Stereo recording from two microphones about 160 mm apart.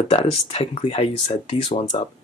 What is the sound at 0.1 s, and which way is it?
Speech, 40° left (ahead or behind).